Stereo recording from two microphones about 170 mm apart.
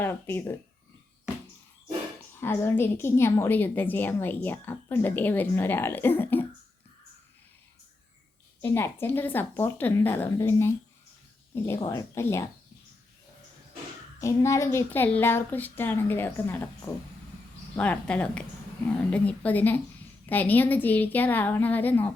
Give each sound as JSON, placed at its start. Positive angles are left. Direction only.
{"t": 0.0, "sound": "a woman's voice", "side_deg": 10}
{"t": 2.4, "sound": "a woman's voice", "side_deg": 15}
{"t": 8.6, "sound": "a woman's voice", "side_deg": 15}
{"t": 14.2, "sound": "a woman's voice", "side_deg": 15}